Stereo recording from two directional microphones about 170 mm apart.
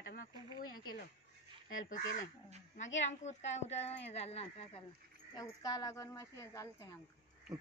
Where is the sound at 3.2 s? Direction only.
40° left (ahead or behind).